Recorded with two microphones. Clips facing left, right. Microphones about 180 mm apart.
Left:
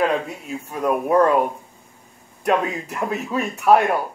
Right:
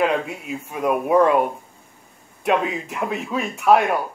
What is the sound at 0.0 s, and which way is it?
Speech, 5° right (ahead or behind).